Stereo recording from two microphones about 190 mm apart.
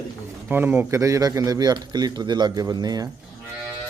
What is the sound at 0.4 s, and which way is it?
Speech, 10° right (ahead or behind).